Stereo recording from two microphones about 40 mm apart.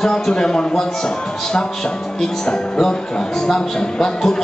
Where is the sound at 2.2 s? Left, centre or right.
Centre.